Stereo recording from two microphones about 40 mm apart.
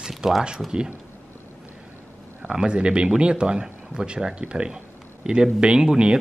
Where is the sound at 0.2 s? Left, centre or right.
Centre.